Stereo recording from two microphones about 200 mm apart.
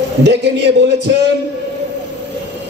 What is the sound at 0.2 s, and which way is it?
Speech, 60° right (ahead or behind).